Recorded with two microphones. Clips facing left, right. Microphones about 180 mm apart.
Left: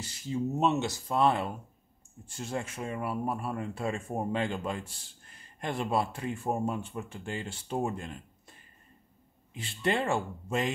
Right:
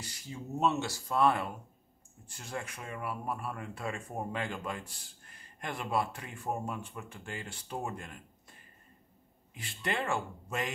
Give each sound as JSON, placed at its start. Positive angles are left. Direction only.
{"t": 0.0, "sound": "speech", "side_deg": 25}
{"t": 9.5, "sound": "speech", "side_deg": 25}